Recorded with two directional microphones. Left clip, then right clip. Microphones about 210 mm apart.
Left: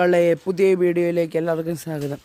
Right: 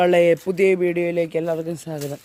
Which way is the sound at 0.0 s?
15° left (ahead or behind).